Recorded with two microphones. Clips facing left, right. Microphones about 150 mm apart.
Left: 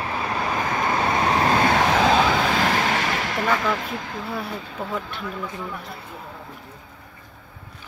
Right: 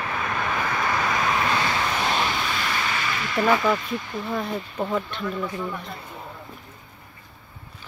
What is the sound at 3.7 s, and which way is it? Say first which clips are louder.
Speech: right 1 dB; 75° left (ahead or behind).